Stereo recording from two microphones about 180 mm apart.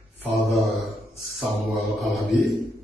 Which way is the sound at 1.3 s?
Centre (ahead or behind).